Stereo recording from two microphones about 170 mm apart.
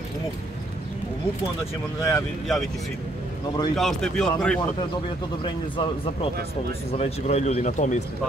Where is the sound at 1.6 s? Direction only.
15° left (ahead or behind).